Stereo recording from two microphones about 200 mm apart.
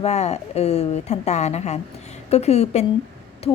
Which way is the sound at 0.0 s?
35° left (ahead or behind).